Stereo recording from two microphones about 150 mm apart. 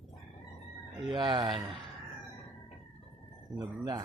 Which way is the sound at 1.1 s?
30° right (ahead or behind).